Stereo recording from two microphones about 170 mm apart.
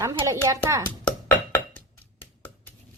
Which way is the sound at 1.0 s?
10° left (ahead or behind).